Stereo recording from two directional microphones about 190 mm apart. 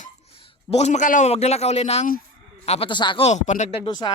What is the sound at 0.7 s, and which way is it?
A man's voice, 35° left (ahead or behind).